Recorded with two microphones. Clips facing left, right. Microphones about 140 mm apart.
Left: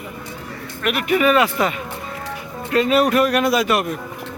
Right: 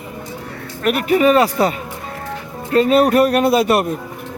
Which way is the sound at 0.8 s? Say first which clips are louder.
Right 4 dB; 35° right (ahead or behind).